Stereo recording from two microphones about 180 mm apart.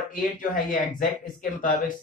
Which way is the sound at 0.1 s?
50° left (ahead or behind).